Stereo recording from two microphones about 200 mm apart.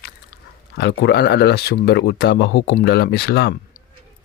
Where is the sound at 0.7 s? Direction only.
55° left (ahead or behind).